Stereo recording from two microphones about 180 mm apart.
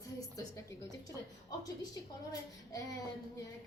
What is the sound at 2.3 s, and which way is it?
Speech, 20° left (ahead or behind).